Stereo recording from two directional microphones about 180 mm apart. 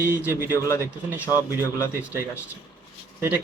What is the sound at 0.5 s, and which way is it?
A man's voice, 15° left (ahead or behind).